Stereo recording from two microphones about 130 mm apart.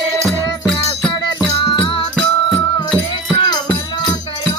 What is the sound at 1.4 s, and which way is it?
Music, 30° left (ahead or behind).